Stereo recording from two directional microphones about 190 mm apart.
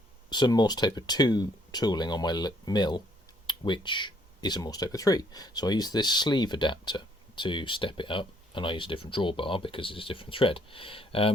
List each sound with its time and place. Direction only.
0.3 s speech: 20° left (ahead or behind)